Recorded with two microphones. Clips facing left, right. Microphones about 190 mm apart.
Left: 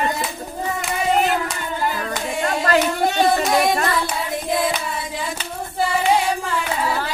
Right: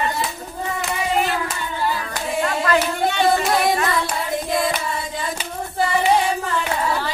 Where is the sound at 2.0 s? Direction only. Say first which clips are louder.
Even; 45° left (ahead or behind).